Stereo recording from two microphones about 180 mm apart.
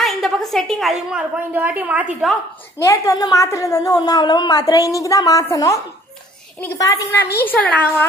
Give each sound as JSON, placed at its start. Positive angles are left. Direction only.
{"t": 0.0, "sound": "a woman's voice", "side_deg": 0}
{"t": 2.8, "sound": "a woman's voice", "side_deg": 15}